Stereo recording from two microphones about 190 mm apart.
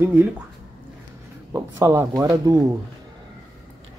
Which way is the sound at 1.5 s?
15° right (ahead or behind).